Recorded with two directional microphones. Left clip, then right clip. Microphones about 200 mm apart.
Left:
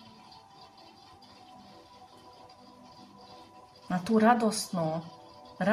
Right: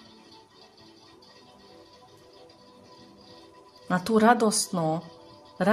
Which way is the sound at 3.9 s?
55° right (ahead or behind).